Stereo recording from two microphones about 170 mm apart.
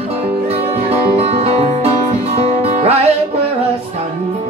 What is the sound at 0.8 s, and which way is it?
Music, 35° right (ahead or behind).